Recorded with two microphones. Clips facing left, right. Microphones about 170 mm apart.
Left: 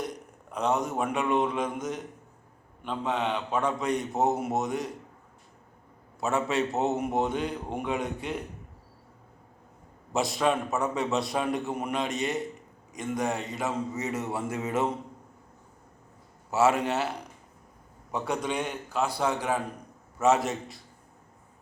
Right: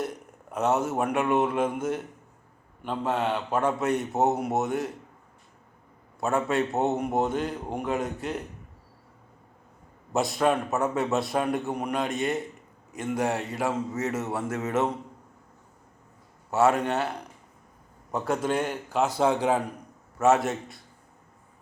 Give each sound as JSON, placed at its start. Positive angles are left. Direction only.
{"t": 0.0, "sound": "a man's voice", "side_deg": -5}
{"t": 6.1, "sound": "a man's voice", "side_deg": 0}
{"t": 10.1, "sound": "a man's voice", "side_deg": 0}
{"t": 16.5, "sound": "a man's voice", "side_deg": 5}
{"t": 19.4, "sound": "a man's voice", "side_deg": -15}
{"t": 20.1, "sound": "a man's voice", "side_deg": 0}